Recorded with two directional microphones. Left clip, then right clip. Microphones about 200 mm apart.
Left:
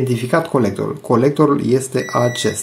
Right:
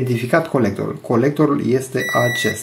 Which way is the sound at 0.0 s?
10° left (ahead or behind).